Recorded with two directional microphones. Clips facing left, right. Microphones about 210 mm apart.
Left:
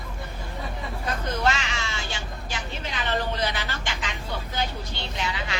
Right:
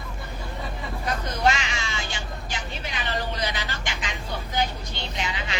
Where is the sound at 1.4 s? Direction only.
15° right (ahead or behind).